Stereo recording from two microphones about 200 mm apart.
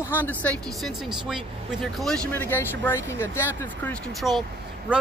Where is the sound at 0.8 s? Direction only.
Centre (ahead or behind).